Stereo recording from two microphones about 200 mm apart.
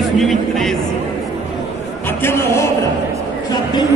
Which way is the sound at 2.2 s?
15° left (ahead or behind).